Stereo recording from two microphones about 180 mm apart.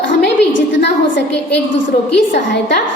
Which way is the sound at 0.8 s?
75° left (ahead or behind).